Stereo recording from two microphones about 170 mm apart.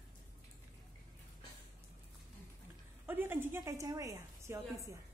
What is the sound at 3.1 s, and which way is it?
A woman's voice, 10° right (ahead or behind).